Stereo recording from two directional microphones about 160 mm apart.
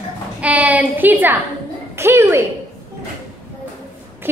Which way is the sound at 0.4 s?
10° right (ahead or behind).